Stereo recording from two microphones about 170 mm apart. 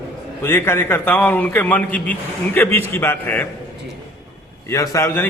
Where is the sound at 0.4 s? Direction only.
15° left (ahead or behind).